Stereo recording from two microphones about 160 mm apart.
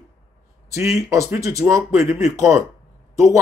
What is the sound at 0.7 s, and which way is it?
Speech, 20° right (ahead or behind).